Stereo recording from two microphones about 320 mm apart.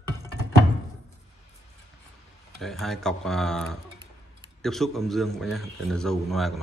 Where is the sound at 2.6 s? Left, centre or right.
Centre.